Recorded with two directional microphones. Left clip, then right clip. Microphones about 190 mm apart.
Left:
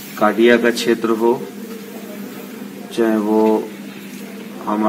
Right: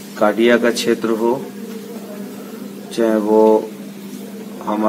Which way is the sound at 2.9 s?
5° right (ahead or behind).